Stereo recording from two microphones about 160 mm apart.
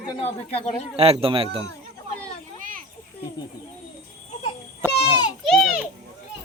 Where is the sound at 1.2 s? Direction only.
35° right (ahead or behind).